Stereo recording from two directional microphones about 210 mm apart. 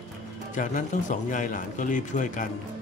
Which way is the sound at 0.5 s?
40° left (ahead or behind).